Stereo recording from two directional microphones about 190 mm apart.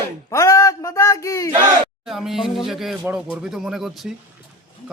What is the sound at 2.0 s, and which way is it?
Music, centre (ahead or behind).